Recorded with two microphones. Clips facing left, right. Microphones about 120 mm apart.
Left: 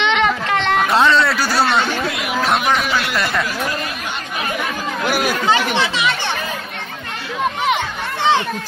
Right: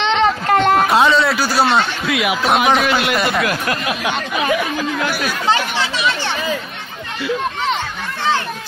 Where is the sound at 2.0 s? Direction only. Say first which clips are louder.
Right 5 dB; 90° right.